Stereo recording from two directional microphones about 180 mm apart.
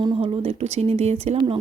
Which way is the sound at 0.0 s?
30° right (ahead or behind).